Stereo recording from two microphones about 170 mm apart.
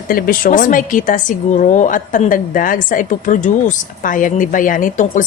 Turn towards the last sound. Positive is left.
turn(degrees=50)  # may be behind; listen again after turning